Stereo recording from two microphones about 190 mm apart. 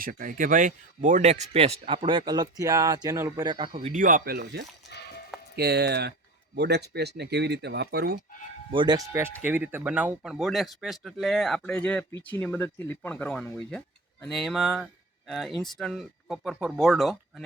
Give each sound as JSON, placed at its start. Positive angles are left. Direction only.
{"t": 0.0, "sound": "speech", "side_deg": -45}
{"t": 3.7, "sound": "speech", "side_deg": -40}
{"t": 8.7, "sound": "speech", "side_deg": -25}